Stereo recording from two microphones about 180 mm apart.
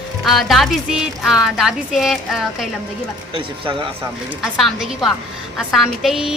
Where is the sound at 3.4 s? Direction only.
30° right (ahead or behind).